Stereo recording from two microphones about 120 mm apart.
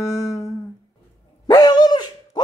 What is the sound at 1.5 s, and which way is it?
Dog, 35° left (ahead or behind).